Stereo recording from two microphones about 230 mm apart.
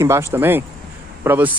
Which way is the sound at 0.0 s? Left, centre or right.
Centre.